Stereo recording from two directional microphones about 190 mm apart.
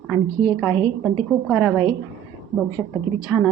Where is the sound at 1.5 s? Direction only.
5° left (ahead or behind).